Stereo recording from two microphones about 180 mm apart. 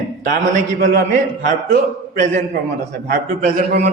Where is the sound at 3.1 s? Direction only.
50° right (ahead or behind).